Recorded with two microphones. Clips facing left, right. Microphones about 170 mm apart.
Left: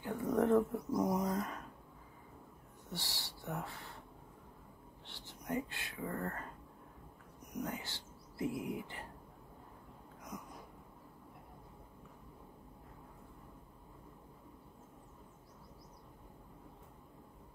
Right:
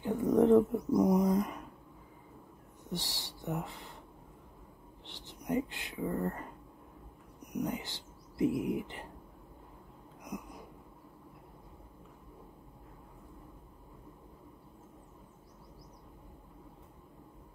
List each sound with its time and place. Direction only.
0.0 s speech: 20° right (ahead or behind)
2.9 s speech: 20° right (ahead or behind)
5.0 s speech: 20° right (ahead or behind)
7.5 s speech: 15° right (ahead or behind)
10.3 s a sound: 15° right (ahead or behind)